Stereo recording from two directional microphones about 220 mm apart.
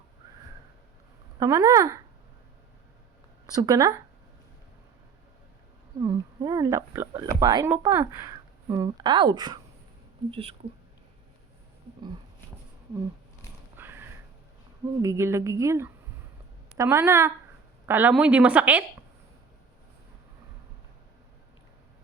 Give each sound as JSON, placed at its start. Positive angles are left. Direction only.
{"t": 1.4, "sound": "speech", "side_deg": -15}
{"t": 3.5, "sound": "speech", "side_deg": -15}
{"t": 6.0, "sound": "speech", "side_deg": -15}
{"t": 13.8, "sound": "a sound", "side_deg": -10}
{"t": 15.0, "sound": "speech", "side_deg": -10}